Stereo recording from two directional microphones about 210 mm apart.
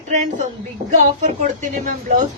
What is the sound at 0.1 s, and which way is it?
Speech, 35° right (ahead or behind).